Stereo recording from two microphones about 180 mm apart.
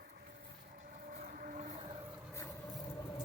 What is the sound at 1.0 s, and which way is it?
Vehicle, 45° right (ahead or behind).